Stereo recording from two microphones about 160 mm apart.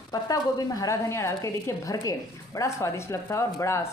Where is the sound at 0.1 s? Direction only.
25° left (ahead or behind).